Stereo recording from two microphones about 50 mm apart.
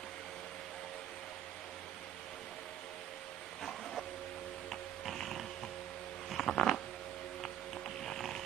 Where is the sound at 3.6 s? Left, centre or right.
Centre.